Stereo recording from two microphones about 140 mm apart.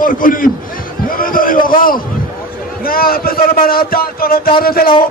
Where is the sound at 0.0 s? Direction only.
75° left (ahead or behind).